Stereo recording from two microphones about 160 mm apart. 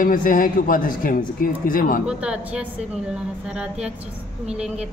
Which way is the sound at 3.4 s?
5° right (ahead or behind).